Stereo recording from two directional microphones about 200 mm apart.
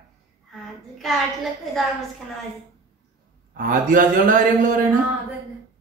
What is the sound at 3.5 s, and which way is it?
A man's voice, 45° right (ahead or behind).